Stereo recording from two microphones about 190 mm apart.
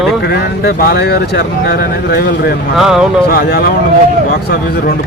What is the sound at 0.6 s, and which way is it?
Speech, 55° left (ahead or behind).